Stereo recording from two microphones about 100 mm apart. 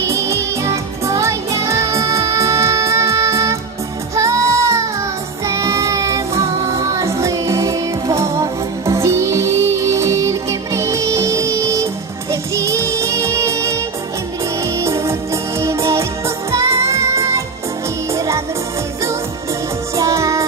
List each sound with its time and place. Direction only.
0.0 s music: 30° right (ahead or behind)
5.5 s child singing: 30° right (ahead or behind)
8.9 s music: 30° right (ahead or behind)
14.8 s music: 30° right (ahead or behind)
20.0 s music: 35° right (ahead or behind)